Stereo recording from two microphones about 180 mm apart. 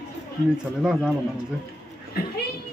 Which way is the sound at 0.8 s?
5° right (ahead or behind).